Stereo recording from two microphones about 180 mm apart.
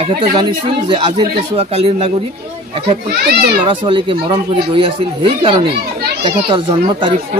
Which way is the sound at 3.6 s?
30° right (ahead or behind).